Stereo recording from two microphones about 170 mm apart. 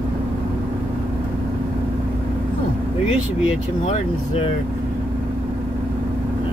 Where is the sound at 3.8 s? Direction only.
35° left (ahead or behind).